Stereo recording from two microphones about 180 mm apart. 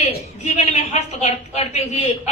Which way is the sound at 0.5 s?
40° left (ahead or behind).